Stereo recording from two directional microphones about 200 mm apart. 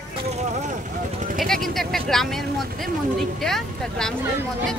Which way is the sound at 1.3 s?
Centre (ahead or behind).